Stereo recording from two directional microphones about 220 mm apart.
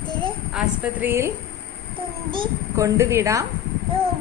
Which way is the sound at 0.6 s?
10° right (ahead or behind).